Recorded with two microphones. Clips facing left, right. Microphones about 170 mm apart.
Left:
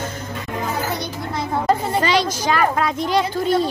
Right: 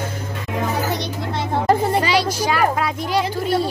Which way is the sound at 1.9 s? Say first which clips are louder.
Even; 10° right (ahead or behind).